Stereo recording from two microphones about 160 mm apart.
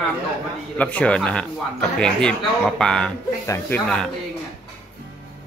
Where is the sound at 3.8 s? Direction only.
5° left (ahead or behind).